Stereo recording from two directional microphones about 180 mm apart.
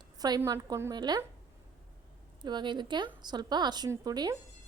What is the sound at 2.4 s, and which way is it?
A woman's voice, 25° right (ahead or behind).